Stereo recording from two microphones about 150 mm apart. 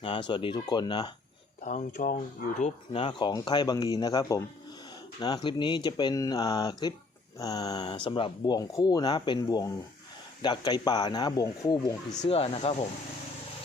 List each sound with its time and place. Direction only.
0.0 s speech: 35° left (ahead or behind)
1.6 s speech: 60° left (ahead or behind)
2.9 s speech: 35° left (ahead or behind)
12.3 s speech: 40° left (ahead or behind)